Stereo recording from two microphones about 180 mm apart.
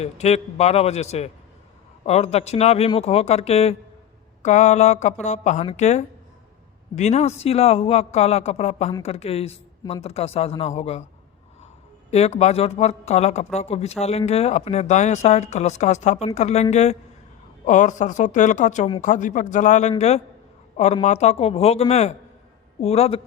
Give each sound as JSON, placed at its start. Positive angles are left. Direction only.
{"t": 0.0, "sound": "speech", "side_deg": 35}
{"t": 12.1, "sound": "speech", "side_deg": 35}